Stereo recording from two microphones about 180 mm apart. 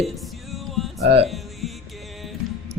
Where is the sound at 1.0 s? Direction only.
35° right (ahead or behind).